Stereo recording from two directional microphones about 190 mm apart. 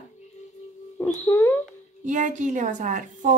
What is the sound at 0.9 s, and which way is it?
Speech, 10° left (ahead or behind).